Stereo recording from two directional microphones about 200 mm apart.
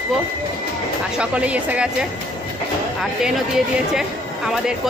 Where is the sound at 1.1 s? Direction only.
5° right (ahead or behind).